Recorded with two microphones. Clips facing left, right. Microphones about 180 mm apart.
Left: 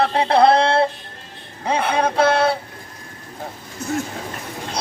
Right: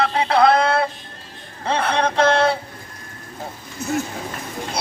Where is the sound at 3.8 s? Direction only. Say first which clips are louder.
Right 1 dB; 10° right (ahead or behind).